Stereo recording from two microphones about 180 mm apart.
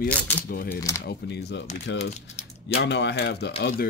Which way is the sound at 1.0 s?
70° left (ahead or behind).